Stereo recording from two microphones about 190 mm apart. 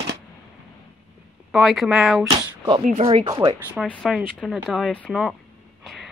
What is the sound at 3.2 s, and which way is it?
Speech, 25° right (ahead or behind).